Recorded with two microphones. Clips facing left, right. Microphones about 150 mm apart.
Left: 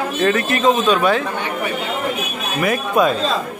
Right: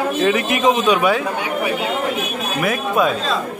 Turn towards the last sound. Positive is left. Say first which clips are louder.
# left 1 dB
turn(degrees=0)  # may be behind; listen again after turning